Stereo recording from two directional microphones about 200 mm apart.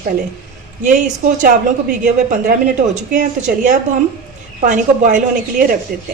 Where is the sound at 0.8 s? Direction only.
40° right (ahead or behind).